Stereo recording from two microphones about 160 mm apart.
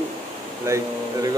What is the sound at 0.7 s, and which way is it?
Speech, 20° right (ahead or behind).